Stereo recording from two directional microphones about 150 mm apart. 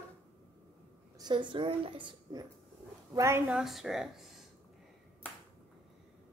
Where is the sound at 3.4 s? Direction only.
5° right (ahead or behind).